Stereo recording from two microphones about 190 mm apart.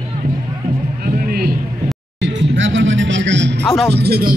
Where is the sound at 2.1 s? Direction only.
75° right (ahead or behind).